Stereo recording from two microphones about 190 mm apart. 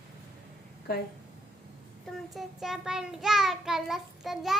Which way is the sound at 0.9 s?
55° left (ahead or behind).